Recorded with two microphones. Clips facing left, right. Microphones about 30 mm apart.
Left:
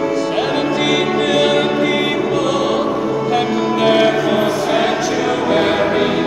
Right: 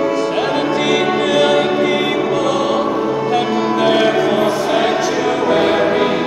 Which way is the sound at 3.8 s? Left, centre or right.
Centre.